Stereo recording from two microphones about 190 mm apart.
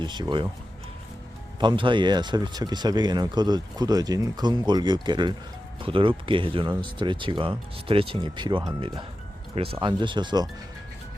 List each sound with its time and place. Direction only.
0.0 s speech: 25° right (ahead or behind)
1.5 s speech: 25° right (ahead or behind)